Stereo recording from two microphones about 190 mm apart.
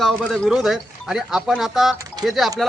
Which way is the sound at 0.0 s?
Centre (ahead or behind).